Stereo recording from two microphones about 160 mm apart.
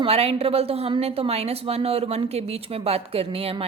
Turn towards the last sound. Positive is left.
turn(degrees=-35)  # may be behind; listen again after turning